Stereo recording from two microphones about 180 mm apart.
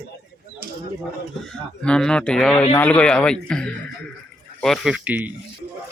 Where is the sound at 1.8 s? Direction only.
5° left (ahead or behind).